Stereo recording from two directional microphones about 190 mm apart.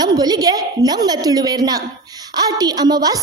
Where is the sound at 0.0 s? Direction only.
20° right (ahead or behind).